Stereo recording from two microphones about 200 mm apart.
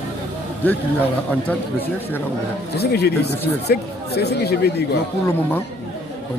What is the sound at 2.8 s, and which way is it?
Speech, 55° left (ahead or behind).